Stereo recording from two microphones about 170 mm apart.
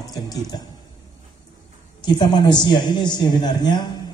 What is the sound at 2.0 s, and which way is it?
A man's voice, 25° left (ahead or behind).